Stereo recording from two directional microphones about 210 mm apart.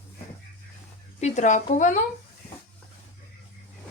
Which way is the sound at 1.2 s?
35° left (ahead or behind).